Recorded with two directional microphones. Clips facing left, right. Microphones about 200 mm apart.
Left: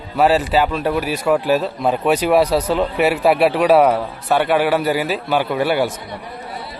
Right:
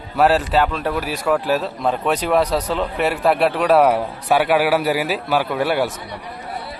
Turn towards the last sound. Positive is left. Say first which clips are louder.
# left 2 dB
turn(degrees=0)  # may be behind; listen again after turning